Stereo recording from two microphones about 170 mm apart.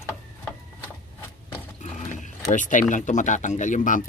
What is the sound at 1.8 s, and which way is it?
Ratchet, 45° left (ahead or behind).